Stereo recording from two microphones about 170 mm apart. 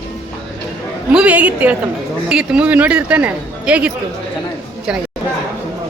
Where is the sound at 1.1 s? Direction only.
5° right (ahead or behind).